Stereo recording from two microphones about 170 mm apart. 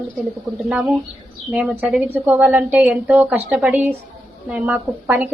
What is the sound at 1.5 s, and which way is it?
A woman's voice, 5° right (ahead or behind).